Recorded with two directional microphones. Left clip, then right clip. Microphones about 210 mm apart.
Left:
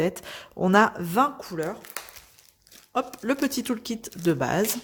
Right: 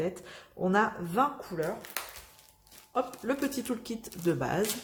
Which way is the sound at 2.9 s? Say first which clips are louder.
Left 4 dB; 45° left (ahead or behind).